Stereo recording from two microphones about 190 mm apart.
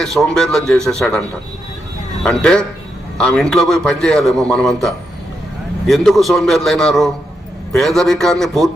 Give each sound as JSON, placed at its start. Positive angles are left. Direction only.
{"t": 0.0, "sound": "a man's voice", "side_deg": 0}
{"t": 2.2, "sound": "a man's voice", "side_deg": 5}